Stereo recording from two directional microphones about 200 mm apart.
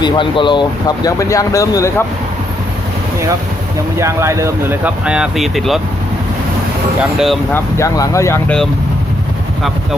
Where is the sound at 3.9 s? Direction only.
15° right (ahead or behind).